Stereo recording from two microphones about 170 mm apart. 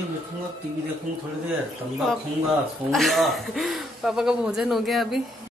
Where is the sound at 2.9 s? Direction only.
Centre (ahead or behind).